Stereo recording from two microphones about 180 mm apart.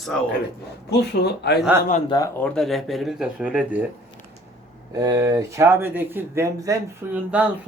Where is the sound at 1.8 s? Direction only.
45° left (ahead or behind).